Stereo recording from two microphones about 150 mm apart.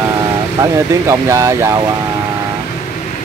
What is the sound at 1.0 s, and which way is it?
Speech, 20° right (ahead or behind).